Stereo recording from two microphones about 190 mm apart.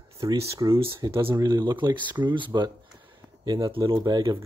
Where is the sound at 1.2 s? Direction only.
15° right (ahead or behind).